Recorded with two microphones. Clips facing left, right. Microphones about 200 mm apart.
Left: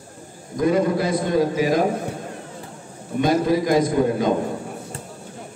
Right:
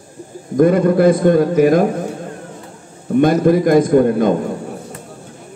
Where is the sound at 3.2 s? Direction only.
55° right (ahead or behind).